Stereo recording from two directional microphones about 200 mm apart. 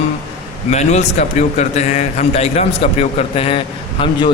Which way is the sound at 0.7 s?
35° left (ahead or behind).